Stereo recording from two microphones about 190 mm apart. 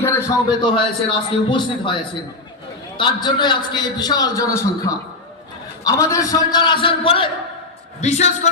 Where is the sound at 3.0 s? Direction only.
25° left (ahead or behind).